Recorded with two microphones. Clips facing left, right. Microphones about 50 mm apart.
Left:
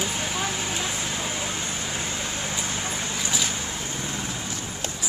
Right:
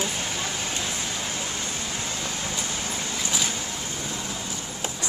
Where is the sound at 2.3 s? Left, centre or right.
Left.